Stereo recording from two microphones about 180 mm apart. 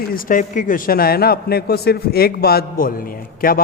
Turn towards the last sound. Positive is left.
turn(degrees=55)  # may be behind; listen again after turning